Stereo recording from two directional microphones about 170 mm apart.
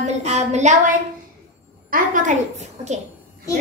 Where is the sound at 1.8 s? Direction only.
55° right (ahead or behind).